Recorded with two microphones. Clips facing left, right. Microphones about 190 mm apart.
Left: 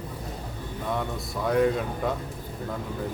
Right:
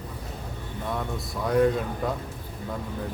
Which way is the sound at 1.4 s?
Centre (ahead or behind).